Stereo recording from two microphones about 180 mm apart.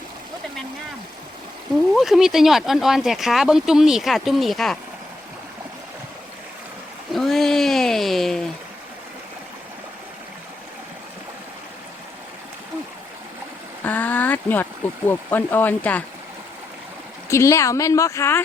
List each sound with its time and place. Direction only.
1.9 s speech: centre (ahead or behind)
7.1 s a sound: centre (ahead or behind)
13.8 s speech: 10° left (ahead or behind)
17.2 s speech: 15° left (ahead or behind)